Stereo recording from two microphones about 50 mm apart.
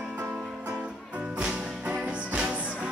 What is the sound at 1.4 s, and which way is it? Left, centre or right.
Music, centre.